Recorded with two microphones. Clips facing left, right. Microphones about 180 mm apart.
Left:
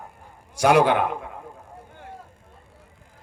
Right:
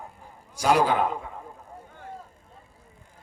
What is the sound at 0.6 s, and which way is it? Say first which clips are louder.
Speech: left 4 dB; 70° left (ahead or behind).